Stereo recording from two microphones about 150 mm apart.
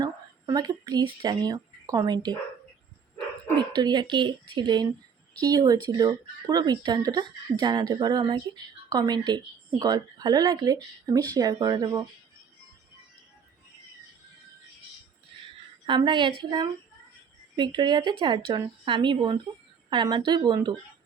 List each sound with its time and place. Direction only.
0.0 s speech: 25° right (ahead or behind)
3.8 s speech: 30° right (ahead or behind)
15.9 s speech: 30° right (ahead or behind)